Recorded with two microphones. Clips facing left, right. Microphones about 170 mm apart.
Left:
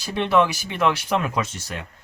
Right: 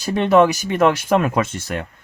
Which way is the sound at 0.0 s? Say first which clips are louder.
Right 6 dB; 45° right (ahead or behind).